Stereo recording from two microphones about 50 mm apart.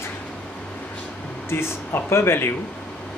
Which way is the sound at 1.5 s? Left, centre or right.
Left.